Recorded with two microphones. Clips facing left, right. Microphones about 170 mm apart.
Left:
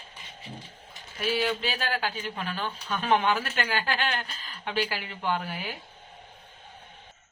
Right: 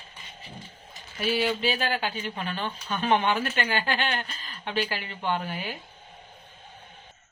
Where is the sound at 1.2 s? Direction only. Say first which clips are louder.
Right 2 dB; centre (ahead or behind).